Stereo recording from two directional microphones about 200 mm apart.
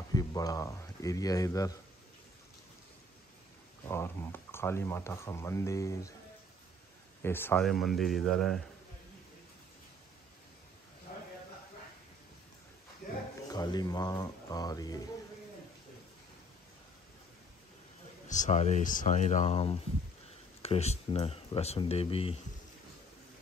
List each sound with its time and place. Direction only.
0.1 s speech: 20° left (ahead or behind)
3.9 s speech: 10° left (ahead or behind)
7.2 s speech: 10° left (ahead or behind)
13.5 s speech: 20° left (ahead or behind)
18.3 s speech: 35° left (ahead or behind)